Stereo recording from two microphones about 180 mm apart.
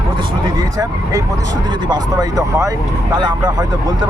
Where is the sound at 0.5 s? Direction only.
20° right (ahead or behind).